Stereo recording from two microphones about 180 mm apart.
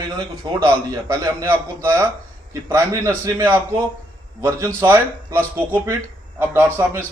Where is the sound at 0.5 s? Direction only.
20° right (ahead or behind).